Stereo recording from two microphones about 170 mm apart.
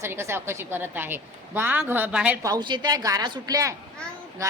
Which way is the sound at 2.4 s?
25° right (ahead or behind).